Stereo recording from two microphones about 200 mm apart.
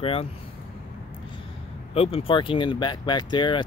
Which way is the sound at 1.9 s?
30° left (ahead or behind).